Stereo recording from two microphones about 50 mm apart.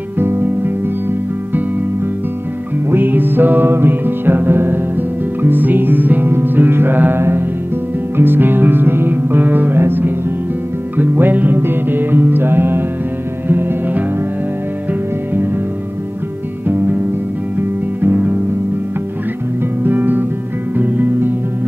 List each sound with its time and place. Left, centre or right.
0.2 s music: right
2.9 s music: right
16.6 s music: right
19.8 s music: right